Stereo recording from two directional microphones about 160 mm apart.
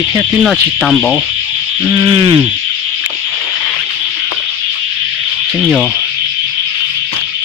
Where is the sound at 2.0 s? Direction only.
30° right (ahead or behind).